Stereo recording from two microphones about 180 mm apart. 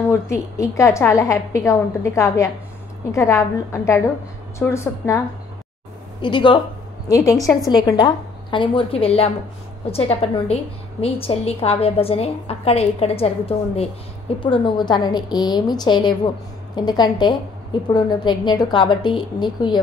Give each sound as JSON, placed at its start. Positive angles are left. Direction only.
{"t": 0.1, "sound": "a woman's voice", "side_deg": 15}
{"t": 6.2, "sound": "a woman's voice", "side_deg": 25}